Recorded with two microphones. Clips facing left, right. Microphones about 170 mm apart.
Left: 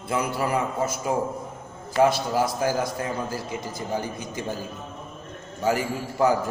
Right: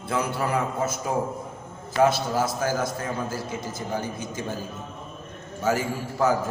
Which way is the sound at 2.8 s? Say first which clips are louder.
Even; 50° right (ahead or behind).